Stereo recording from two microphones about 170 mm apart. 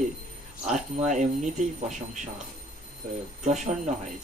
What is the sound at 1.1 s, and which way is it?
Speech, 45° right (ahead or behind).